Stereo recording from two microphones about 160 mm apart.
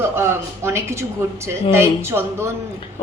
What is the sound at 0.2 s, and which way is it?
A woman's voice, 15° right (ahead or behind).